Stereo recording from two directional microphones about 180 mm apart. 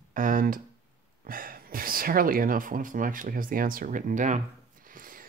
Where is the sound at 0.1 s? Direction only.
50° right (ahead or behind).